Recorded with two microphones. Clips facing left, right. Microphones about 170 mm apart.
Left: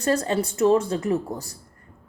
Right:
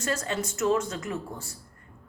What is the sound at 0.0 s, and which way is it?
A woman's voice, 35° left (ahead or behind).